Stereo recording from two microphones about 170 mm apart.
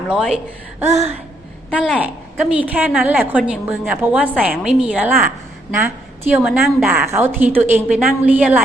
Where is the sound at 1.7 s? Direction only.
5° right (ahead or behind).